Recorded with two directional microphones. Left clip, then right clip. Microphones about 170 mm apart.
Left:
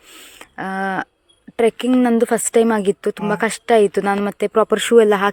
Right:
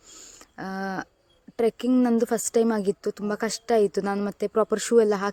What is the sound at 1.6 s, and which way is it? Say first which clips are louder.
Speech: left 7 dB; 15° left (ahead or behind).